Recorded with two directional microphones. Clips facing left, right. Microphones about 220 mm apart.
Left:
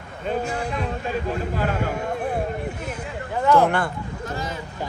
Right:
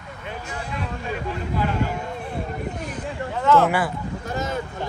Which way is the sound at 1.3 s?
45° left (ahead or behind).